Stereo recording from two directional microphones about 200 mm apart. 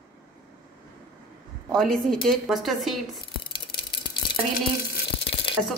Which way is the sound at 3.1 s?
25° left (ahead or behind).